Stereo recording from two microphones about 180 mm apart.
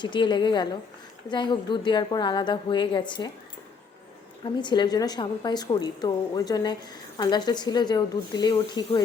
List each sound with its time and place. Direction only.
0.0 s a woman's voice: 25° left (ahead or behind)
4.6 s a woman's voice: 25° left (ahead or behind)